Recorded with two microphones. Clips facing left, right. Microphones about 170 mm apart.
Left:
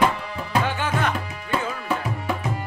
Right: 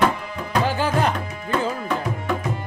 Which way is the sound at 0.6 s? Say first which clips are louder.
Right 6 dB; 35° right (ahead or behind).